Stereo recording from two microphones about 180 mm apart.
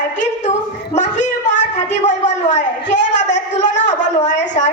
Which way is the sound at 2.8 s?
75° left (ahead or behind).